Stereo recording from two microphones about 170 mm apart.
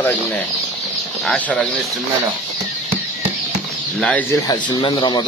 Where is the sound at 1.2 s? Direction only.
10° left (ahead or behind).